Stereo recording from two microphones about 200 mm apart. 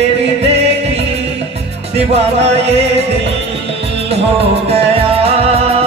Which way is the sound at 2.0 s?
30° right (ahead or behind).